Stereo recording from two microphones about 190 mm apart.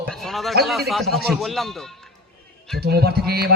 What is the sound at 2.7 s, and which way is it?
Speech, 55° right (ahead or behind).